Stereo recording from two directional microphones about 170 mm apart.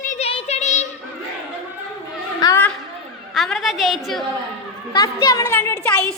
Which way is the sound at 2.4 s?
15° left (ahead or behind).